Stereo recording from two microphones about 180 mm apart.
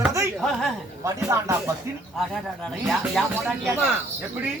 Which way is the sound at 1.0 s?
15° right (ahead or behind).